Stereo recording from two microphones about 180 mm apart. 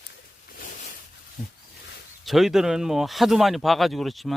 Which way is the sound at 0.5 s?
50° left (ahead or behind).